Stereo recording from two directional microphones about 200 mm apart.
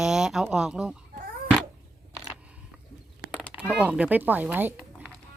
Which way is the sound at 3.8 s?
5° right (ahead or behind).